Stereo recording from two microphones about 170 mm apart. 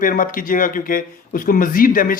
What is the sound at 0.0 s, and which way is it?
A man's voice, 50° left (ahead or behind).